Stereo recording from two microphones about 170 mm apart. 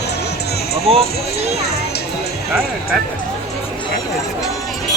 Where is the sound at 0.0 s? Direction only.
75° left (ahead or behind).